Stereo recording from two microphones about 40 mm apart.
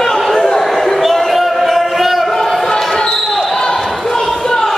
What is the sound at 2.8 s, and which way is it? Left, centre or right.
Basketball bounce, centre.